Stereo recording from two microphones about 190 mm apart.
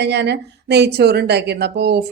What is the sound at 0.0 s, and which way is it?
Speech, 65° right (ahead or behind).